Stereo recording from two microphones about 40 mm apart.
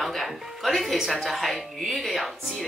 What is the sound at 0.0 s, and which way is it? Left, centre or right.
Speech, centre.